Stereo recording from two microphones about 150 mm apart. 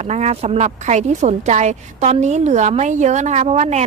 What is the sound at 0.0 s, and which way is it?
A woman's voice, 50° right (ahead or behind).